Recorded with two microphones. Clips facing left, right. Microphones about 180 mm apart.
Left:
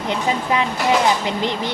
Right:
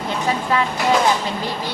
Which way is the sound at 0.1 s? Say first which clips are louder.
Left 1 dB; 20° left (ahead or behind).